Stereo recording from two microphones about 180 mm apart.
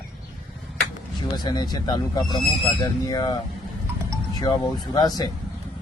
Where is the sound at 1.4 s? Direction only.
25° left (ahead or behind).